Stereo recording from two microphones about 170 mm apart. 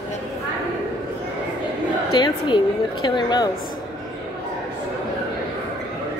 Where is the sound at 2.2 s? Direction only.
25° left (ahead or behind).